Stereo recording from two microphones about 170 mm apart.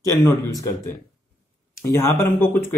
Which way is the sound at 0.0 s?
20° left (ahead or behind).